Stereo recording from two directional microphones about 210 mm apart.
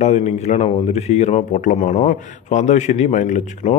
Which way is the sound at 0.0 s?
30° left (ahead or behind).